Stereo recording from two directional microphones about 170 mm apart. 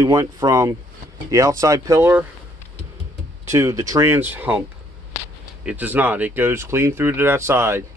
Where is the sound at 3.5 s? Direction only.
20° right (ahead or behind).